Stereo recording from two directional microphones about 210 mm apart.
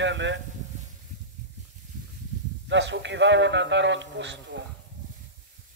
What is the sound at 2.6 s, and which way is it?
Speech, 60° right (ahead or behind).